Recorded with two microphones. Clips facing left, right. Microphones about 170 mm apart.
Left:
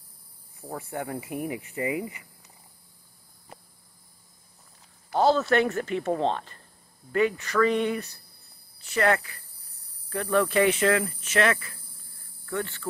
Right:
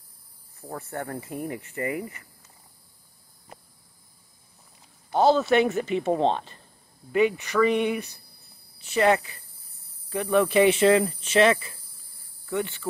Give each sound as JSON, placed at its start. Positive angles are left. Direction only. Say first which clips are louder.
{"t": 0.6, "sound": "speech", "louder": "even", "side_deg": 10}
{"t": 5.1, "sound": "speech", "louder": "right 2 dB", "side_deg": -20}
{"t": 12.4, "sound": "cricket", "louder": "right 3 dB", "side_deg": -15}